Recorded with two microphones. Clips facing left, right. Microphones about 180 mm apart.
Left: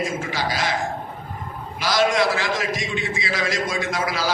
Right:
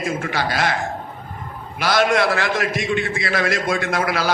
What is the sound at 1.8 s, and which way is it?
A man's voice, 60° right (ahead or behind).